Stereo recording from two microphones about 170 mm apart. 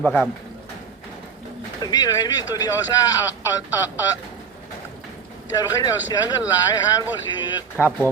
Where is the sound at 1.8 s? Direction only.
25° left (ahead or behind).